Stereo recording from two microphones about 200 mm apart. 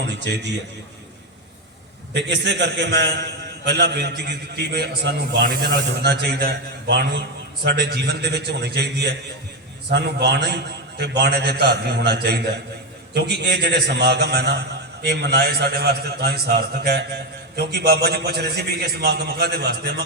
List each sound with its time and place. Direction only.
0.0 s a man's voice: 60° right (ahead or behind)
2.1 s a man's voice: 60° right (ahead or behind)